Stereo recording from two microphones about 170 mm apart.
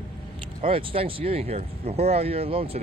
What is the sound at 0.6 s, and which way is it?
Speech, 35° right (ahead or behind).